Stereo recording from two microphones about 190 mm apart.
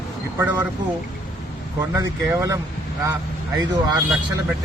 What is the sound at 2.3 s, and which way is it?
Speech, 15° right (ahead or behind).